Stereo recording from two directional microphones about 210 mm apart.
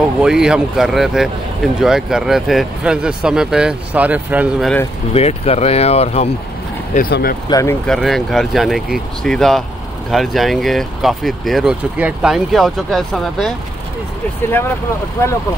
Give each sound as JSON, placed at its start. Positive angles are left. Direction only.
{"t": 0.2, "sound": "speech", "side_deg": -5}
{"t": 5.1, "sound": "speech", "side_deg": 30}
{"t": 6.9, "sound": "speech", "side_deg": 45}
{"t": 7.4, "sound": "speech", "side_deg": 15}
{"t": 7.8, "sound": "speech", "side_deg": 0}